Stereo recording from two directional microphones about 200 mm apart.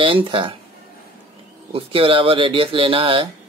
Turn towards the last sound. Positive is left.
turn(degrees=-25)  # may be behind; listen again after turning